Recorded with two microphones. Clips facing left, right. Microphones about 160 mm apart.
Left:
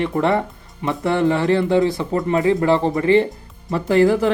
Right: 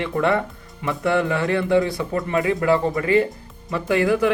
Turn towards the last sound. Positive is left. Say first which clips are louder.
# left 4 dB
turn(degrees=30)  # may be behind; listen again after turning